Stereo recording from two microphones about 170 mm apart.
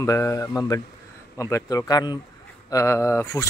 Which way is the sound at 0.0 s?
15° left (ahead or behind).